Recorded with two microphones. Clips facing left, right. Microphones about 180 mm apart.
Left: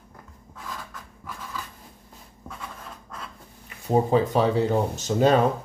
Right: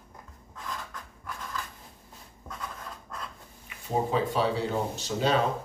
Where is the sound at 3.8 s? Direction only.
45° left (ahead or behind).